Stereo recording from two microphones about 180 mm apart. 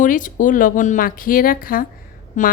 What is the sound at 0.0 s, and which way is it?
A woman's voice, 45° left (ahead or behind).